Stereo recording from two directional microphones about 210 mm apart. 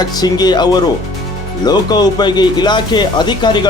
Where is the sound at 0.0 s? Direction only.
20° left (ahead or behind).